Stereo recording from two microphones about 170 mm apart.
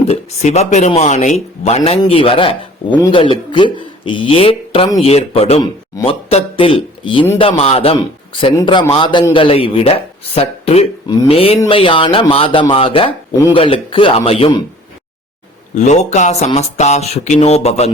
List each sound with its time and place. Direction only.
0.1 s a man's voice: 40° left (ahead or behind)
15.7 s a man's voice: 45° left (ahead or behind)